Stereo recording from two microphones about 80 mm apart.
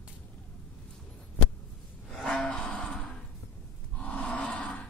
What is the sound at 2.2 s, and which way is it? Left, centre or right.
Gasp, centre.